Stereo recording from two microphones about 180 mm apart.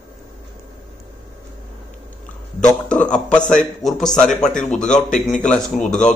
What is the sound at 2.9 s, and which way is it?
A man's voice, 5° left (ahead or behind).